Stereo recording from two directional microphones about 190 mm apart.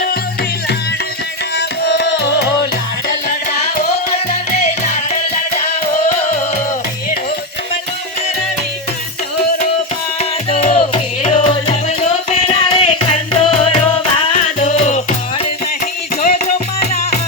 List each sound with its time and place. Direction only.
1.5 s music: 65° left (ahead or behind)
10.2 s music: 35° left (ahead or behind)